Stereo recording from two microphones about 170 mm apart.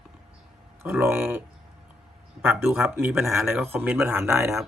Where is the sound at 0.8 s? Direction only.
15° right (ahead or behind).